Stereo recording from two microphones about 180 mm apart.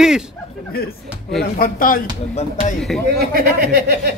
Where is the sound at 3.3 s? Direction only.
55° right (ahead or behind).